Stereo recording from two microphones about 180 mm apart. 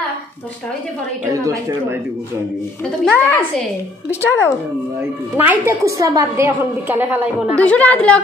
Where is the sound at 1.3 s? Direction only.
20° right (ahead or behind).